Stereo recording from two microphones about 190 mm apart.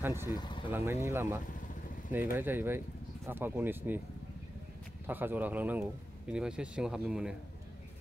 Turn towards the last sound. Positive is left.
turn(degrees=-5)  # may be behind; listen again after turning